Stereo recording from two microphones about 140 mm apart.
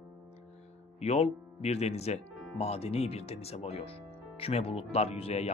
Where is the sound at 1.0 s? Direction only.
50° left (ahead or behind).